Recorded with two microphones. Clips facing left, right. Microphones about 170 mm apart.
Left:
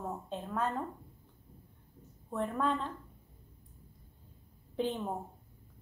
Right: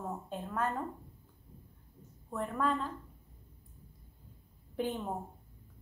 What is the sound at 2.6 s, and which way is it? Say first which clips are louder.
Speech: right 2 dB; 5° right (ahead or behind).